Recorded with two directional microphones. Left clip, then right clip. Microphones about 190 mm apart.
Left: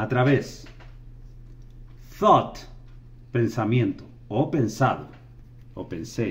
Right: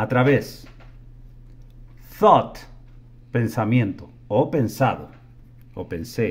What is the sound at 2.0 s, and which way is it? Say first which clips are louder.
Speech: right 3 dB; 65° right (ahead or behind).